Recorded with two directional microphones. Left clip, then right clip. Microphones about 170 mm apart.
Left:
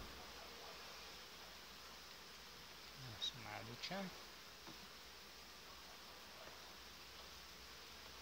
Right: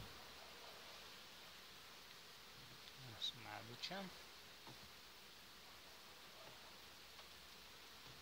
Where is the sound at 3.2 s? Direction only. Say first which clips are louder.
Left 1 dB; 30° right (ahead or behind).